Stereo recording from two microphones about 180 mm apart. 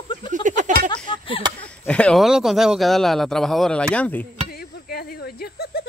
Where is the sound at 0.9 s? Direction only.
30° left (ahead or behind).